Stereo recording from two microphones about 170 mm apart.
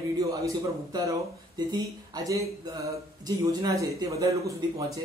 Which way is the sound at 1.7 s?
20° right (ahead or behind).